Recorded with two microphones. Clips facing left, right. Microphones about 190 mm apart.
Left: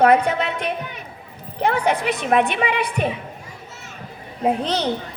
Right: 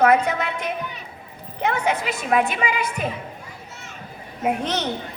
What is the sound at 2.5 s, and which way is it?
Speech, 35° left (ahead or behind).